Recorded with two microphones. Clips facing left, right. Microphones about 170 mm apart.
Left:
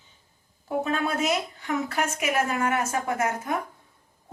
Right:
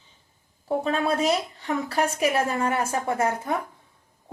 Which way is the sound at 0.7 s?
30° right (ahead or behind).